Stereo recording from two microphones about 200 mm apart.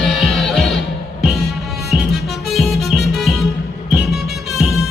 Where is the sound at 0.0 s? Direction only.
Centre (ahead or behind).